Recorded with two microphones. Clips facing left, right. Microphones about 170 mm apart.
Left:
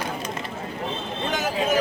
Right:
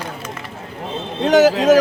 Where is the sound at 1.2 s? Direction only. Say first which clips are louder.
Right 13 dB; 85° right.